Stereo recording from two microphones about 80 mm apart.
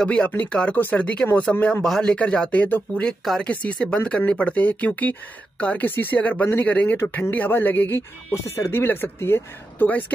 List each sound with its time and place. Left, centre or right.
0.0 s speech: centre